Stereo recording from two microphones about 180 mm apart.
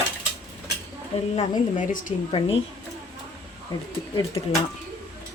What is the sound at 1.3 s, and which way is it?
Speech, 40° left (ahead or behind).